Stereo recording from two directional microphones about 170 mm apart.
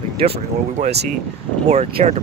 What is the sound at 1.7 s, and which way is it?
Speech, 40° right (ahead or behind).